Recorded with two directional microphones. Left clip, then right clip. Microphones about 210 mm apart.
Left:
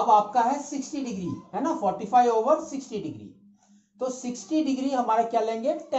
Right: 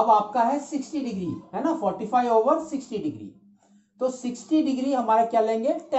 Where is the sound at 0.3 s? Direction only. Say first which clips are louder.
Right 1 dB; 10° right (ahead or behind).